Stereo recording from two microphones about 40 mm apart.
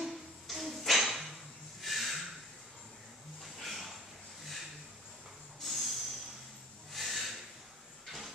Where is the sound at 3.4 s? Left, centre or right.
Centre.